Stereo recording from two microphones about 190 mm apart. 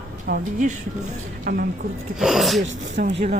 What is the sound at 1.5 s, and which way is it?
Speech, 50° right (ahead or behind).